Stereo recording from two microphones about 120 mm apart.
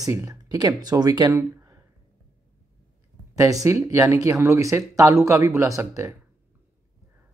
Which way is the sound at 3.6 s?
25° right (ahead or behind).